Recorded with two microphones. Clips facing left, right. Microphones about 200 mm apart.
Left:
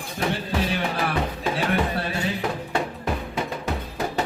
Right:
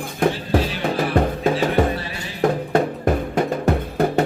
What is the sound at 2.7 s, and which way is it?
Music, 50° right (ahead or behind).